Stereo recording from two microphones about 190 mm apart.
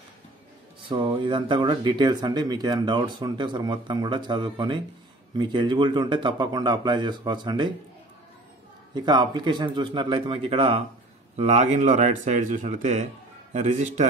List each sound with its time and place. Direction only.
0.8 s speech: 25° right (ahead or behind)
8.9 s speech: 25° right (ahead or behind); by 14.0 s 40° right (ahead or behind)